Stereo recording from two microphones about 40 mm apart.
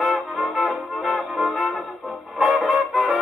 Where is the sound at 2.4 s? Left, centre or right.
Centre.